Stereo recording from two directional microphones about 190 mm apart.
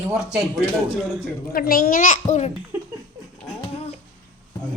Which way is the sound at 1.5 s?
50° left (ahead or behind).